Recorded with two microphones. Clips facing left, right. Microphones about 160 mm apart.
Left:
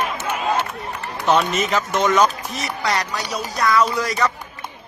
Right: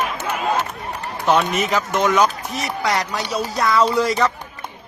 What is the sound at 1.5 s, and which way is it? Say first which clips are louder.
Speech: right 1 dB; 10° right (ahead or behind).